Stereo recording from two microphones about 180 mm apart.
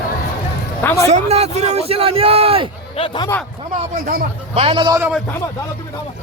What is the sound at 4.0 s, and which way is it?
Speech, 55° right (ahead or behind).